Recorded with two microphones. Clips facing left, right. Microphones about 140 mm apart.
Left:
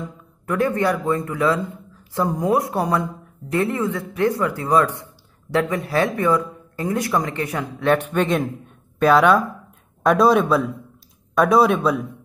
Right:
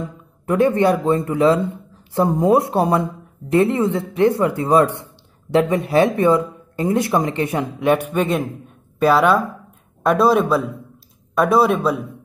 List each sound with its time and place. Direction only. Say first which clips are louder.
0.5 s a man's voice: right 5 dB; 25° right (ahead or behind)
7.8 s speech: right 1 dB; 10° right (ahead or behind)